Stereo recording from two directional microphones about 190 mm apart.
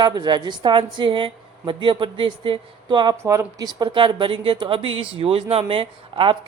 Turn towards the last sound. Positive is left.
turn(degrees=-25)  # may be behind; listen again after turning